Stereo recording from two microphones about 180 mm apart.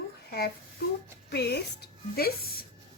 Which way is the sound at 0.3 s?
60° left (ahead or behind).